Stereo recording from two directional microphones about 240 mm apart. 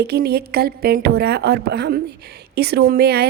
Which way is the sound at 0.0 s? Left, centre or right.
Right.